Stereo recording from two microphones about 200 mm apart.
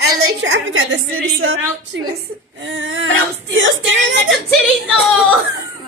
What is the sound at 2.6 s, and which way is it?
Whimper, 70° right (ahead or behind).